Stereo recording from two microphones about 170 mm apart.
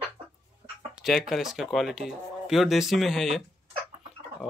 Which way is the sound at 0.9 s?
Centre (ahead or behind).